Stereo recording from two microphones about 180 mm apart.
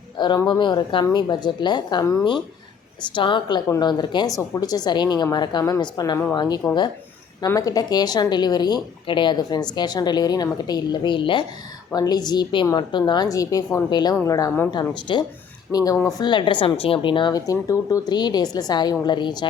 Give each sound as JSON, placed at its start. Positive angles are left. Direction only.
{"t": 0.2, "sound": "speech", "side_deg": 25}